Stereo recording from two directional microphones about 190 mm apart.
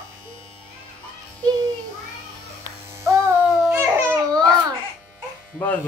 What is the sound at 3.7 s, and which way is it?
Babbling, 15° right (ahead or behind).